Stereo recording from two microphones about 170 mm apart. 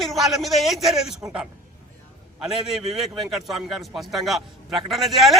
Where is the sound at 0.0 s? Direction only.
Centre (ahead or behind).